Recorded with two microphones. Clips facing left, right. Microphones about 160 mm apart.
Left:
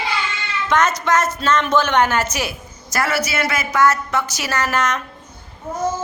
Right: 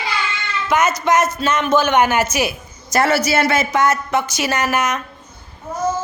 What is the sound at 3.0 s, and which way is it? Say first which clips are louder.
A woman's voice: right 5 dB; 30° right (ahead or behind).